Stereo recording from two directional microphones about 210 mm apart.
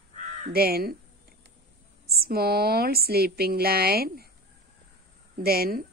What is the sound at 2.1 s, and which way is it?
A woman's voice, 45° right (ahead or behind).